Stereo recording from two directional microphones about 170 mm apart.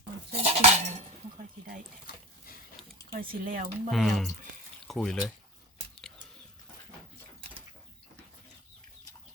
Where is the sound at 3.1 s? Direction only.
55° right (ahead or behind).